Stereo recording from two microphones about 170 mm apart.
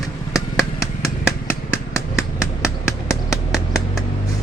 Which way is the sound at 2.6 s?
15° left (ahead or behind).